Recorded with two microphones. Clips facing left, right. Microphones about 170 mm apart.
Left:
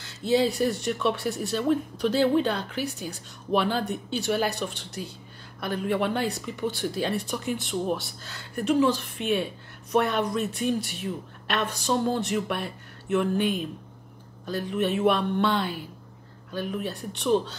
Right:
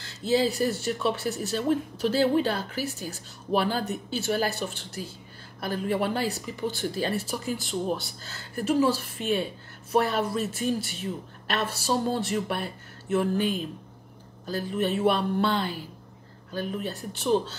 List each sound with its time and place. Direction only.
0.0 s speech: centre (ahead or behind)